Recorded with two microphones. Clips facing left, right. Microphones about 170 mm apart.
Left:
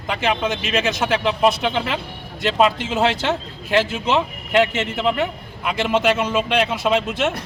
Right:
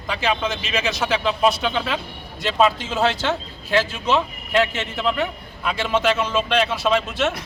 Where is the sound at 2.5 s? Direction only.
15° left (ahead or behind).